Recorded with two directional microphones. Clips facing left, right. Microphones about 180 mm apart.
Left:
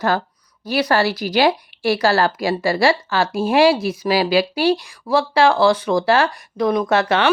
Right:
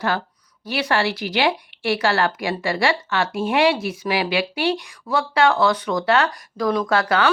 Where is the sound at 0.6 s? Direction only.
40° left (ahead or behind).